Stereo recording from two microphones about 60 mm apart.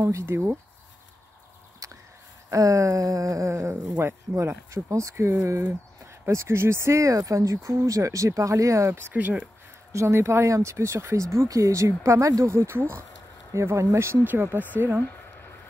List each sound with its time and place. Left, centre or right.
0.3 s speech: right
2.5 s a sound: right
4.0 s speech: right
9.1 s speech: right
9.9 s speech: right
14.2 s speech: right